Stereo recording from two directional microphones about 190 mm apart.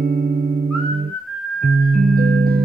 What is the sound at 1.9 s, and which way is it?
Music, 50° right (ahead or behind).